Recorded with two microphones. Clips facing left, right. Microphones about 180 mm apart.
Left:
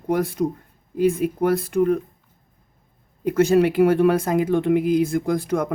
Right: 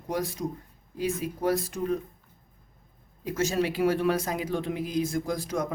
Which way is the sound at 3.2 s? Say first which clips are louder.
Left 10 dB; 55° left (ahead or behind).